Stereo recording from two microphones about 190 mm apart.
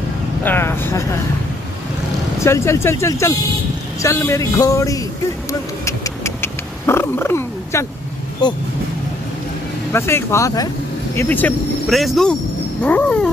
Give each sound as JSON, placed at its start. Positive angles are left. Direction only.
{"t": 0.4, "sound": "speech", "side_deg": 10}
{"t": 2.4, "sound": "speech", "side_deg": 15}
{"t": 5.5, "sound": "cat", "side_deg": 15}
{"t": 9.9, "sound": "speech", "side_deg": 15}